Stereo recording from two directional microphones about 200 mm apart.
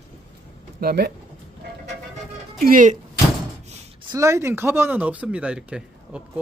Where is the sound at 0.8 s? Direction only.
50° right (ahead or behind).